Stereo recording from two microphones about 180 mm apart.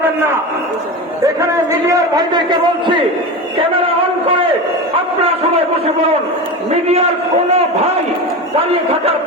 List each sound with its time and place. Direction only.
1.9 s a man's voice: 20° right (ahead or behind)
6.7 s a man's voice: 35° right (ahead or behind)